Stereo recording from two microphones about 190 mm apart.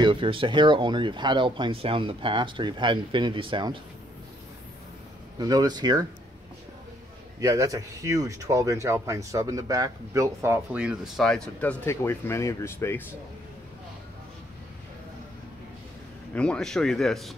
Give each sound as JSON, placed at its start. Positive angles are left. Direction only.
{"t": 0.0, "sound": "speech", "side_deg": -25}
{"t": 5.4, "sound": "speech", "side_deg": -20}
{"t": 7.3, "sound": "speech", "side_deg": -15}
{"t": 16.3, "sound": "speech", "side_deg": 5}